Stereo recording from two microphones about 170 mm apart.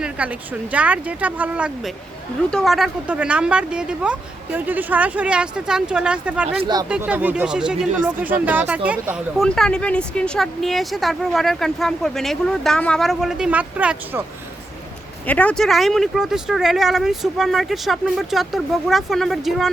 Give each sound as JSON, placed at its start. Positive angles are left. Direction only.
{"t": 0.0, "sound": "speech", "side_deg": -10}
{"t": 6.6, "sound": "speech", "side_deg": -25}
{"t": 6.8, "sound": "speech", "side_deg": -5}
{"t": 9.4, "sound": "speech", "side_deg": 5}
{"t": 15.3, "sound": "speech", "side_deg": 10}